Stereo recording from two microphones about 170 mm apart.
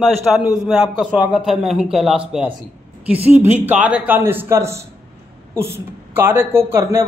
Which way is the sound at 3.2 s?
10° right (ahead or behind).